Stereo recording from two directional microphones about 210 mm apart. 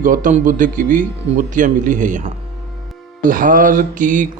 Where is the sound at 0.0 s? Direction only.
40° right (ahead or behind).